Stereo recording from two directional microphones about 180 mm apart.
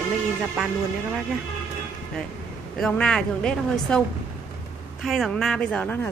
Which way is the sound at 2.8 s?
5° left (ahead or behind).